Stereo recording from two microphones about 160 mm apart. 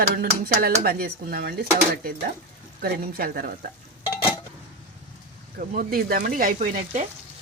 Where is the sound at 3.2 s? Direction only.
65° right (ahead or behind).